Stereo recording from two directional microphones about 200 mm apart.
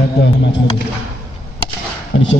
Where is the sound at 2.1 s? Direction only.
70° left (ahead or behind).